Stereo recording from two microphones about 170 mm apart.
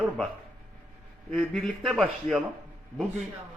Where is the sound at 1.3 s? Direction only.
5° left (ahead or behind).